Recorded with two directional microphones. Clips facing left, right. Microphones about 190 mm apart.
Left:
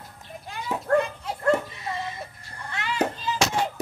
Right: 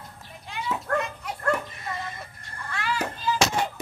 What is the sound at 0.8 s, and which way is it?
Dog, 30° left (ahead or behind).